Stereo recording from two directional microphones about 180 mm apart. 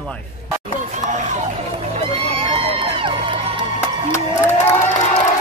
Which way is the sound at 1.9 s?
30° right (ahead or behind).